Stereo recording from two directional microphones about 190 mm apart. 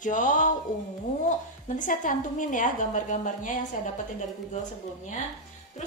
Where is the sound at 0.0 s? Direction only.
45° left (ahead or behind).